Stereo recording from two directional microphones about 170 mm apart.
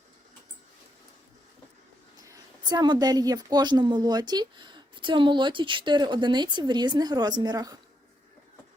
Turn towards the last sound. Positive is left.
turn(degrees=-20)  # may be behind; listen again after turning